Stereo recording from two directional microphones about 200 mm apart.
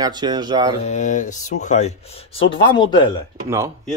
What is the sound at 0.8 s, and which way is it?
Speech, 35° left (ahead or behind).